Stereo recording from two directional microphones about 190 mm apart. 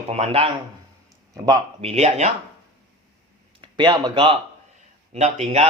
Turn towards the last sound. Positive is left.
turn(degrees=-35)  # may be behind; listen again after turning